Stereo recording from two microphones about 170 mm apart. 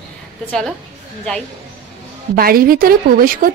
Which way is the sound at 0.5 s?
Centre (ahead or behind).